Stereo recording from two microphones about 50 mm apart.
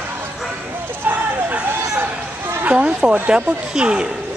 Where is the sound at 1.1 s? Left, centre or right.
Right.